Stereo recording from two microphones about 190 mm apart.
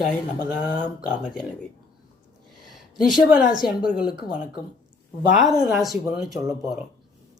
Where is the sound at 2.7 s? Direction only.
Centre (ahead or behind).